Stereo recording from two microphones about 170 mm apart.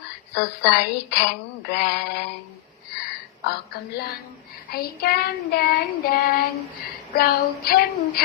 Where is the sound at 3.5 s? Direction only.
70° left (ahead or behind).